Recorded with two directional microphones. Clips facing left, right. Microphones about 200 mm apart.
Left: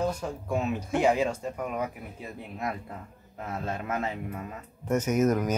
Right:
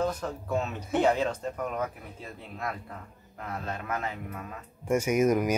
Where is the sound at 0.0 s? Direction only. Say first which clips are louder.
Even; 10° left (ahead or behind).